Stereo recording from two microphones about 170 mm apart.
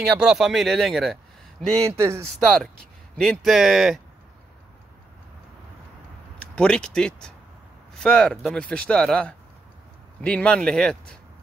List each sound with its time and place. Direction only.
0.0 s speech: centre (ahead or behind)
1.9 s speech: 15° right (ahead or behind)
2.4 s speech: 5° left (ahead or behind)
6.4 s speech: 5° left (ahead or behind)